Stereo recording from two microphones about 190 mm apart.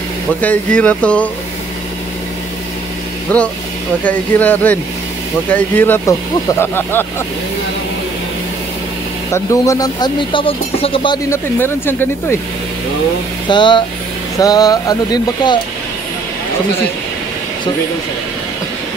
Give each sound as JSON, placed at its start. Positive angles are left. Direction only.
{"t": 0.4, "sound": "speech", "side_deg": 5}
{"t": 3.3, "sound": "speech", "side_deg": 5}
{"t": 9.3, "sound": "speech", "side_deg": 15}
{"t": 11.2, "sound": "speech", "side_deg": 10}
{"t": 13.5, "sound": "speech", "side_deg": 25}